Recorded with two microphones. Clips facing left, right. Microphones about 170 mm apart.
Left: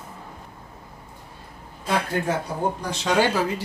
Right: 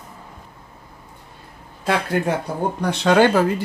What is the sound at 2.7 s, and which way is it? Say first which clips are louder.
Speech: right 9 dB; 60° right (ahead or behind).